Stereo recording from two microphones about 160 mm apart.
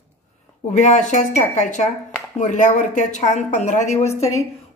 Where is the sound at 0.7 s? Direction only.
50° left (ahead or behind).